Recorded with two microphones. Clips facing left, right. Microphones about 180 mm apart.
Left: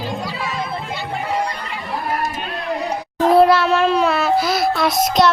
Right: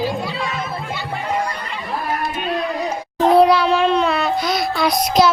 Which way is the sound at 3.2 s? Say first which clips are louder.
Even; centre (ahead or behind).